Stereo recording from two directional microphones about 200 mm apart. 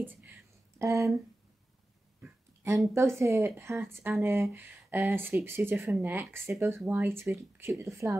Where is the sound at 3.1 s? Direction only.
15° right (ahead or behind).